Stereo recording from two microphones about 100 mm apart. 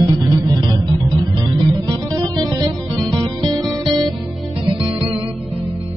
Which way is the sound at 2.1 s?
40° right (ahead or behind).